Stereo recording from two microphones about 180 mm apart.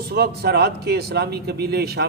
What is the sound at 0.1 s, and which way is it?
A man's voice, 65° right (ahead or behind).